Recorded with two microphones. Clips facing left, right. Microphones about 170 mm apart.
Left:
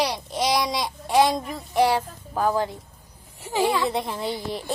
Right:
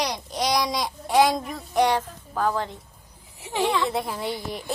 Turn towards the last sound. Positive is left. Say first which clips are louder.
# left 1 dB
turn(degrees=0)  # may be behind; listen again after turning